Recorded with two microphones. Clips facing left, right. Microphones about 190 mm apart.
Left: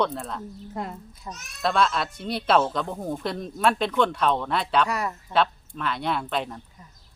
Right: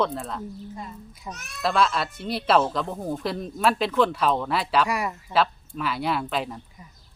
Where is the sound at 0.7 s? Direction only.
65° left (ahead or behind).